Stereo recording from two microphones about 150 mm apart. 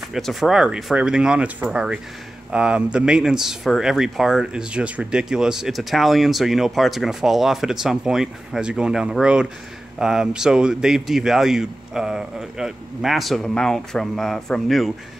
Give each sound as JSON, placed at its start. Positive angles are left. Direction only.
{"t": 0.1, "sound": "speech", "side_deg": 0}